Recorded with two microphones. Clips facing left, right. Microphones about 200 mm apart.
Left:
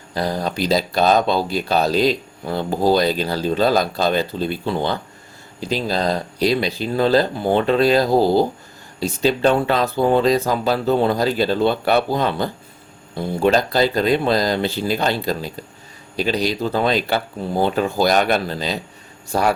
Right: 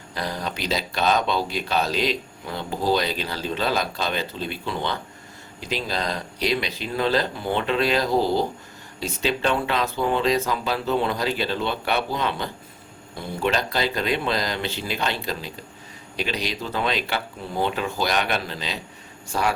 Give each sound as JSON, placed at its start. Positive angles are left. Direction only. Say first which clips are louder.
{"t": 0.1, "sound": "speech", "louder": "left 7 dB", "side_deg": 35}